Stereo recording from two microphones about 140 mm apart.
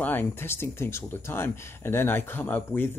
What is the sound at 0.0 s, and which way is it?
Speech, 15° left (ahead or behind).